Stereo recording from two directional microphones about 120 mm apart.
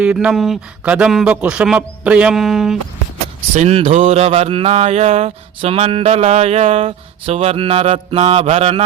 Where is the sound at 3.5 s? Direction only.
60° right (ahead or behind).